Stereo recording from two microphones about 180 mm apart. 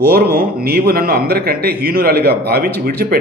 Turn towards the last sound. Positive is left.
turn(degrees=-60)  # may be behind; listen again after turning